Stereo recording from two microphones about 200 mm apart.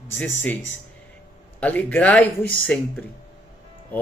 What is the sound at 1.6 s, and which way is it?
Speech, 5° left (ahead or behind).